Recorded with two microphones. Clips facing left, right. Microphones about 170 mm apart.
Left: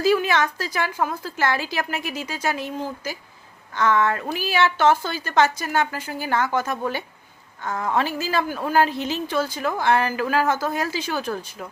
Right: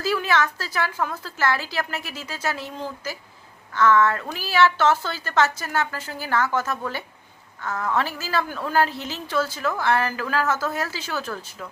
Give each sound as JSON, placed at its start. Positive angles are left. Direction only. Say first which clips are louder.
{"t": 0.0, "sound": "a woman's voice", "louder": "left 3 dB", "side_deg": 15}